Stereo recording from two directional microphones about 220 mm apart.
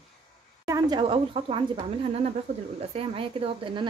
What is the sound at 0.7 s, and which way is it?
Speech, 20° right (ahead or behind).